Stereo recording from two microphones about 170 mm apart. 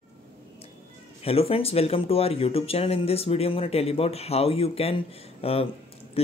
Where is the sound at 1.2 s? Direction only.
35° left (ahead or behind).